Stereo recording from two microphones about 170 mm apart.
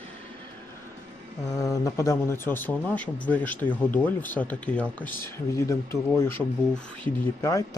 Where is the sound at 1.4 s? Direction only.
20° left (ahead or behind).